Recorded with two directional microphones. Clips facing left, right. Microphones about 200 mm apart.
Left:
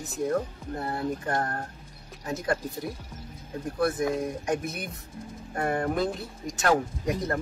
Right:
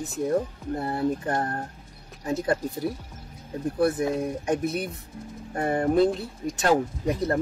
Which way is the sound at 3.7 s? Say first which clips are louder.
Right 2 dB; 30° right (ahead or behind).